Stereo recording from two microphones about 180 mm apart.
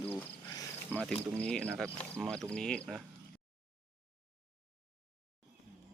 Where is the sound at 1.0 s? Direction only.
5° left (ahead or behind).